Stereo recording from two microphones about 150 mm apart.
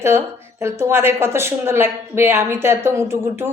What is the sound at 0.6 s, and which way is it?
Speech, 15° right (ahead or behind).